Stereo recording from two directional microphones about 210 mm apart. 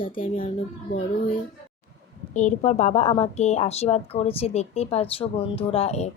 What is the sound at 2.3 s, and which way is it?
A woman's voice, 35° left (ahead or behind).